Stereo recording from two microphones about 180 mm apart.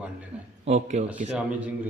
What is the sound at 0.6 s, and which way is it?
Speech, 40° right (ahead or behind).